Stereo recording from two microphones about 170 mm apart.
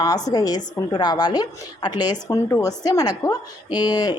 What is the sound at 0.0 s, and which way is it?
A woman's voice, 20° left (ahead or behind).